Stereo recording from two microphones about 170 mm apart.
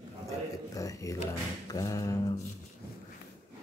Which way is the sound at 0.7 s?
20° left (ahead or behind).